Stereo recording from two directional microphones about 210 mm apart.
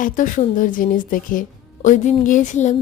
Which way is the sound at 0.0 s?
40° left (ahead or behind).